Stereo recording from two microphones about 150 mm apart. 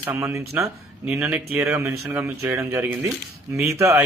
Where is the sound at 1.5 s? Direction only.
15° right (ahead or behind).